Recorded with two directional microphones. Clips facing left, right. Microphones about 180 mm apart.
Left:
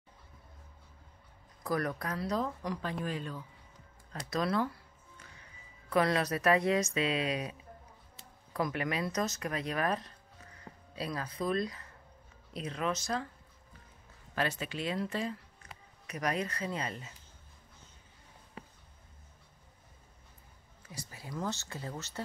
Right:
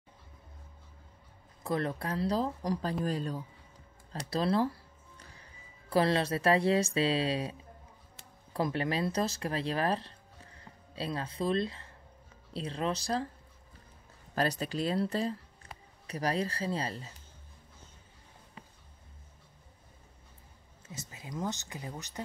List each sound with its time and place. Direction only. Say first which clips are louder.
1.6 s speech: right 1 dB; 25° right (ahead or behind)
8.5 s speech: right 2 dB; 30° right (ahead or behind)
14.3 s speech: right 3 dB; 40° right (ahead or behind)
20.8 s speech: right 1 dB; 20° right (ahead or behind)